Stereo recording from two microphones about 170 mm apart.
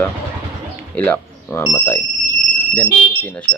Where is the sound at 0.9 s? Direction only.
10° left (ahead or behind).